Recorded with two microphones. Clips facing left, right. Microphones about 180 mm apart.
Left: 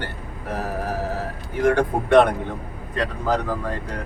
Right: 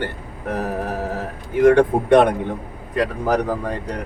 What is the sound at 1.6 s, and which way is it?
Speech, 15° right (ahead or behind).